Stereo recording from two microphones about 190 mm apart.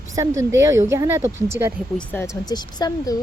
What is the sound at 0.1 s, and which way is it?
Speech, 15° right (ahead or behind).